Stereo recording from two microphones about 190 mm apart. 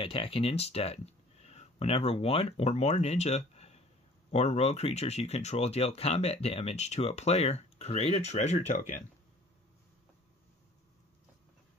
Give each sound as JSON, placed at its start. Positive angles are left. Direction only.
{"t": 0.0, "sound": "speech", "side_deg": 30}